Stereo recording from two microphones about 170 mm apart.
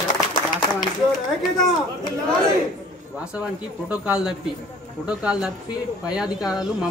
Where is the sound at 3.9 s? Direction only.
5° right (ahead or behind).